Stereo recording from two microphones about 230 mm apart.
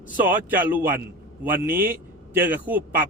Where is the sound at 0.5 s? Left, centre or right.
Centre.